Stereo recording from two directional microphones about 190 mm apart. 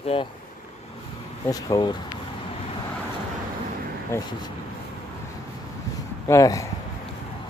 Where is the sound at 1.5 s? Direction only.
20° left (ahead or behind).